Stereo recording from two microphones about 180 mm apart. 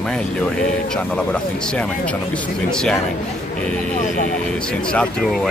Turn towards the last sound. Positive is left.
turn(degrees=5)  # may be behind; listen again after turning